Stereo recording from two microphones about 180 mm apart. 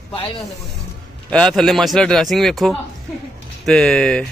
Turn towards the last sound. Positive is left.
turn(degrees=5)  # may be behind; listen again after turning